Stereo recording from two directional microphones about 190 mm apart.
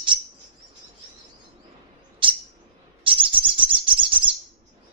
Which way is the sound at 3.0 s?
25° right (ahead or behind).